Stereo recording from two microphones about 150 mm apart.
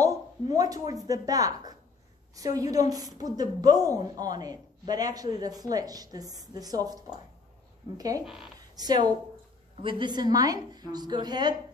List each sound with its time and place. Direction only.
0.0 s a woman's voice: 25° right (ahead or behind)
8.7 s a woman's voice: 25° right (ahead or behind)